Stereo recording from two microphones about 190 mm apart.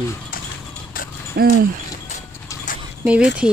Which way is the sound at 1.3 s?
55° right (ahead or behind).